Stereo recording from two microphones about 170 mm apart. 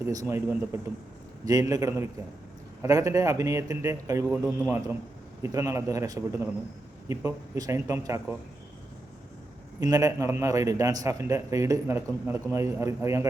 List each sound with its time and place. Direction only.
0.0 s a man's voice: 20° right (ahead or behind)
9.8 s a man's voice: 20° right (ahead or behind)